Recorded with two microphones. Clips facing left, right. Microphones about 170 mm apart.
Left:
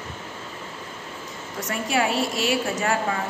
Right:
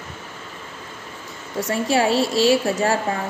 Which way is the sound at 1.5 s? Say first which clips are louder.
Right 5 dB; 30° right (ahead or behind).